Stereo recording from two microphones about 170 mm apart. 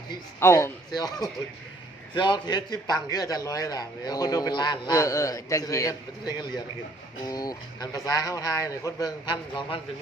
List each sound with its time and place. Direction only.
0.3 s a man's voice: 15° left (ahead or behind)